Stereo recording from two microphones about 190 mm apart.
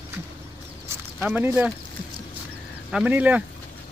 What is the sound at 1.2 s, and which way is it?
Speech, 5° right (ahead or behind).